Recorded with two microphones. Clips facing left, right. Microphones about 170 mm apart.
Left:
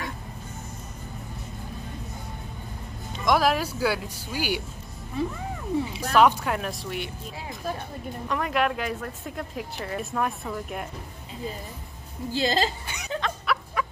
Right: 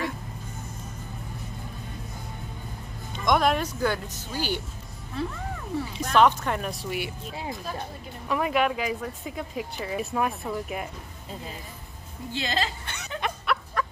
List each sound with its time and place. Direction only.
3.3 s speech: 5° left (ahead or behind)
8.3 s speech: 5° right (ahead or behind)
12.3 s a woman's voice: 35° left (ahead or behind)
12.8 s laughter: 10° left (ahead or behind)
13.8 s fowl: 10° left (ahead or behind)